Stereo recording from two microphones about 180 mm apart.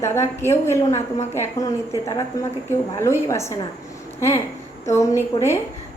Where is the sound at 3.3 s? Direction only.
15° left (ahead or behind).